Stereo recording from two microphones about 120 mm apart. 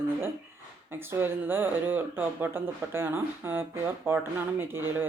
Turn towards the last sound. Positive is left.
turn(degrees=-20)  # may be behind; listen again after turning